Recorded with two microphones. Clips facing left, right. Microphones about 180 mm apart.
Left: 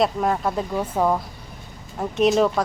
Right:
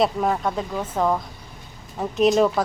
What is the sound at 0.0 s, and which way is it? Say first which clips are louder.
A woman's voice: even; centre (ahead or behind).